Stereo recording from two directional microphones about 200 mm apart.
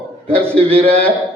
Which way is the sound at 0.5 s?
30° right (ahead or behind).